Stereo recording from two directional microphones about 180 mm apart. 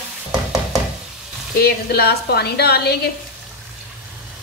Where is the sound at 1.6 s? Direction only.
60° left (ahead or behind).